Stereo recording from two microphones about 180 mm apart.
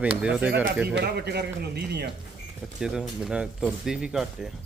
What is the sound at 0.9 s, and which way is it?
A man's voice, 65° right (ahead or behind).